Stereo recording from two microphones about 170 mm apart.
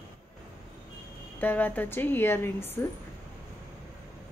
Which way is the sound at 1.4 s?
10° left (ahead or behind).